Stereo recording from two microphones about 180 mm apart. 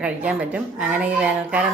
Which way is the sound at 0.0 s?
5° right (ahead or behind).